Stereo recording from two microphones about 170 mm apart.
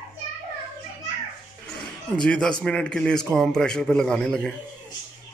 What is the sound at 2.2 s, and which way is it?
A child's voice, 5° left (ahead or behind).